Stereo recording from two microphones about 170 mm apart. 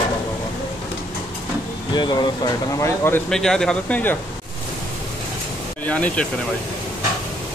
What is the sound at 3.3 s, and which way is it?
Speech, 5° left (ahead or behind).